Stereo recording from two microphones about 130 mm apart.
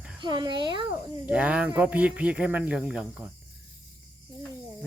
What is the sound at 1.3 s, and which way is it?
Speech, 10° right (ahead or behind).